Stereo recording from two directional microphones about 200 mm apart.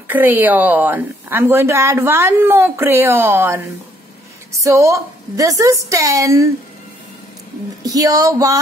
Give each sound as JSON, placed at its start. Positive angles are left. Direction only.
{"t": 0.1, "sound": "a woman's voice", "side_deg": -10}
{"t": 4.6, "sound": "a woman's voice", "side_deg": -15}
{"t": 7.8, "sound": "a woman's voice", "side_deg": -15}